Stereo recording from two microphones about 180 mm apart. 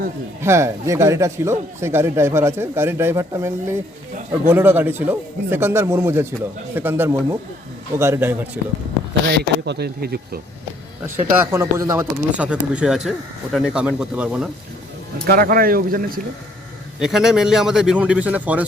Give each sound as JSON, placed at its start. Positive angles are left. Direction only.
{"t": 0.4, "sound": "speech", "side_deg": -15}
{"t": 9.6, "sound": "speech", "side_deg": -65}
{"t": 11.3, "sound": "speech", "side_deg": -15}
{"t": 15.3, "sound": "speech", "side_deg": -55}
{"t": 17.0, "sound": "speech", "side_deg": 0}